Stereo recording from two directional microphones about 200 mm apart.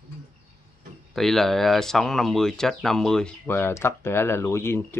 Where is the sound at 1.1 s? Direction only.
Centre (ahead or behind).